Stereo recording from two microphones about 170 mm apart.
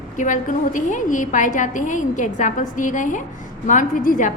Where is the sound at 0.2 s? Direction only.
50° left (ahead or behind).